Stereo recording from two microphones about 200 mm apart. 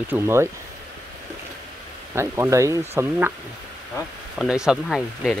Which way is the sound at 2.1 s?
15° right (ahead or behind).